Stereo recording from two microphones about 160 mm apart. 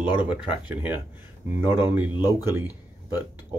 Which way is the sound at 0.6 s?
10° right (ahead or behind).